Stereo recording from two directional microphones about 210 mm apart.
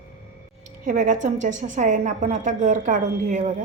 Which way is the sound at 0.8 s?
35° right (ahead or behind).